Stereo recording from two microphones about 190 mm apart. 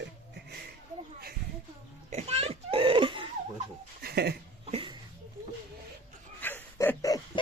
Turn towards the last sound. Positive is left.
turn(degrees=15)  # may be behind; listen again after turning